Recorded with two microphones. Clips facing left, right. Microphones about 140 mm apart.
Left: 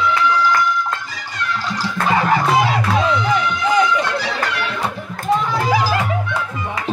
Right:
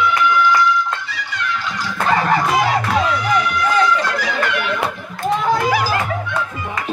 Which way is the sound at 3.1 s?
20° left (ahead or behind).